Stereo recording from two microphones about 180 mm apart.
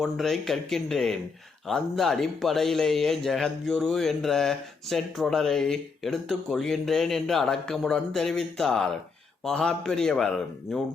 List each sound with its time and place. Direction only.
0.0 s a man's voice: centre (ahead or behind)